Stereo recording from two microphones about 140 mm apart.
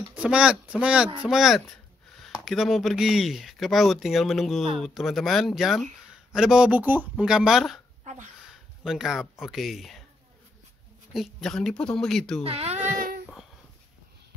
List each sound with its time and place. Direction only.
0.1 s speech: 10° right (ahead or behind)
8.8 s speech: 5° right (ahead or behind)
11.1 s speech: 5° left (ahead or behind)
12.4 s speech: 45° right (ahead or behind)
12.9 s a sound: 90° right